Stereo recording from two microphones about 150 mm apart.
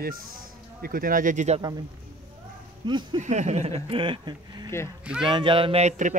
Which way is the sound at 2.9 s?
30° right (ahead or behind).